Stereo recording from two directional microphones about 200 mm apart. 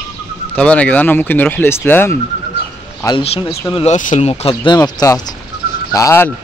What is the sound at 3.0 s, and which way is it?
Speech, 30° left (ahead or behind).